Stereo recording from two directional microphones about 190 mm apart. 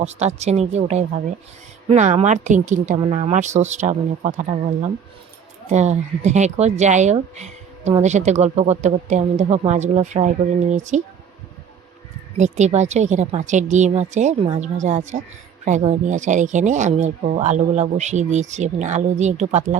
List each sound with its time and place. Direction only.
0.0 s speech: 35° right (ahead or behind)
12.4 s speech: 35° right (ahead or behind)